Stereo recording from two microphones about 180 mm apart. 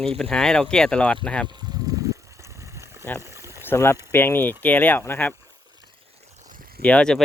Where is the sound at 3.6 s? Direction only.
15° left (ahead or behind).